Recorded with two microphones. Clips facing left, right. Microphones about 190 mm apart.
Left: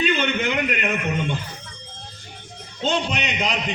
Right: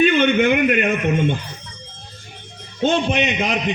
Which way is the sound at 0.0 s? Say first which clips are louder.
Right 7 dB; 55° right (ahead or behind).